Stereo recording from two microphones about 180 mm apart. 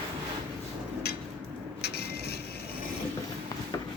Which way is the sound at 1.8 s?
65° left (ahead or behind).